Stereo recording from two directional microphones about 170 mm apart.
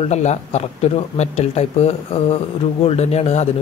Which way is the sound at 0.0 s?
40° left (ahead or behind).